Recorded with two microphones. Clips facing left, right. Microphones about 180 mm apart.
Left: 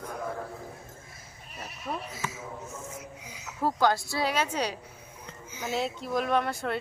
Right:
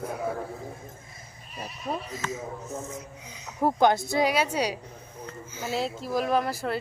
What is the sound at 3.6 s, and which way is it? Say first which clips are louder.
A woman's voice: right 4 dB; 20° right (ahead or behind).